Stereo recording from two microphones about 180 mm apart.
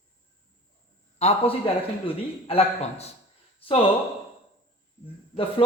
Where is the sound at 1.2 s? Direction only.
35° left (ahead or behind).